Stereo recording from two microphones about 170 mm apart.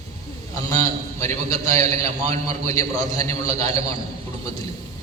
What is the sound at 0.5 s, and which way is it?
A man's voice, 20° left (ahead or behind).